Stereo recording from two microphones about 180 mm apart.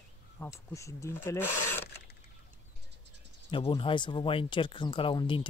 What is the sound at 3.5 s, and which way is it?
Speech, 25° left (ahead or behind).